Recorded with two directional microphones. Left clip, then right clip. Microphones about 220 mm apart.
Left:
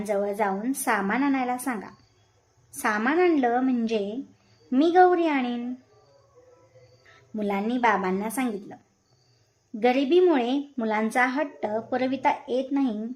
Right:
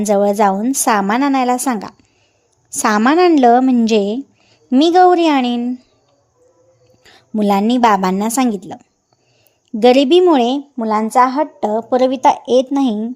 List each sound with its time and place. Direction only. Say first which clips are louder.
0.0 s a woman's voice: right 13 dB; 40° right (ahead or behind)
7.0 s a woman's voice: right 12 dB; 40° right (ahead or behind)
9.8 s a woman's voice: right 11 dB; 35° right (ahead or behind)
10.8 s speech: right 12 dB; 15° right (ahead or behind)